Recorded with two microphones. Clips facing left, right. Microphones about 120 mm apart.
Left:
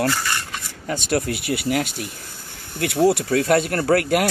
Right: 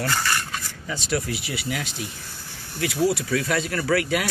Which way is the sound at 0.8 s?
55° left (ahead or behind).